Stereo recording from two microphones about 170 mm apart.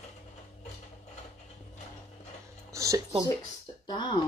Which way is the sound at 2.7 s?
20° right (ahead or behind).